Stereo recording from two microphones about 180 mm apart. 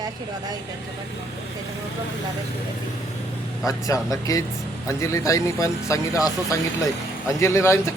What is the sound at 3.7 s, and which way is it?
Speech, 20° left (ahead or behind).